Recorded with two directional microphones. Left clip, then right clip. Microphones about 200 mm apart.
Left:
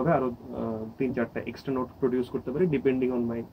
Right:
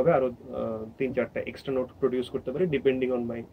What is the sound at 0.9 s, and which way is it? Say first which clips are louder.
Speech: right 2 dB; 10° right (ahead or behind).